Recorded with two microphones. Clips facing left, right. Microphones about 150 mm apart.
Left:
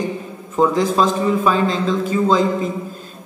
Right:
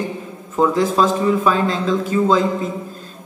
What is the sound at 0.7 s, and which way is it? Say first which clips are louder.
Speech: even; centre (ahead or behind).